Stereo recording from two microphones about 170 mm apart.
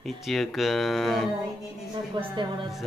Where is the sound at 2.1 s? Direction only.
25° right (ahead or behind).